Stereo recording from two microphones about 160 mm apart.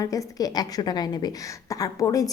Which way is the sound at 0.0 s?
20° left (ahead or behind).